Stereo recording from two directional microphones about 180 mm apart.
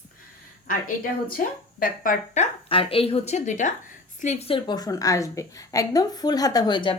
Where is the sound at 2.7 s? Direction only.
30° left (ahead or behind).